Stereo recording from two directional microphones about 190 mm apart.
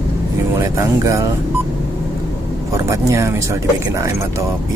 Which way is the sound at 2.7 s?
15° right (ahead or behind).